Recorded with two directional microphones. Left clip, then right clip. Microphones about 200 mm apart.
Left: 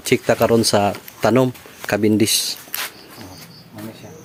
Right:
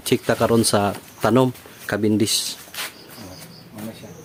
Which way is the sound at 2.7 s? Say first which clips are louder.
Left 2 dB; 65° left (ahead or behind).